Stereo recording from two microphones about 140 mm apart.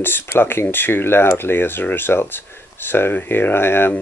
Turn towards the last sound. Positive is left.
turn(degrees=15)  # may be behind; listen again after turning